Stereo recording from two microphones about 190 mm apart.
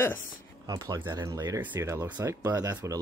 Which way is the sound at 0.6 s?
20° right (ahead or behind).